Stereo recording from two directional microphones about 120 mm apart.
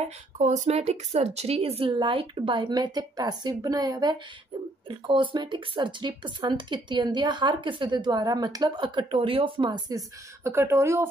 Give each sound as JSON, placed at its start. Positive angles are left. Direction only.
{"t": 0.4, "sound": "a woman's voice", "side_deg": -85}